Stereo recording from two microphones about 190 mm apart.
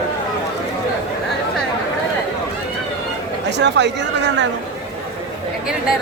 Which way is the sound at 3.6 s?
65° right (ahead or behind).